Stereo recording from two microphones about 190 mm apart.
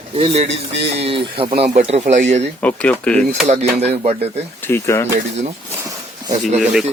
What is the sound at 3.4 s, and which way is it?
Speech, 35° right (ahead or behind).